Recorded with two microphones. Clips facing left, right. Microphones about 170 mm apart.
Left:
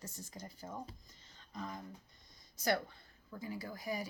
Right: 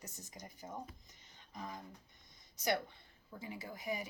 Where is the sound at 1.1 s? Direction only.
20° right (ahead or behind).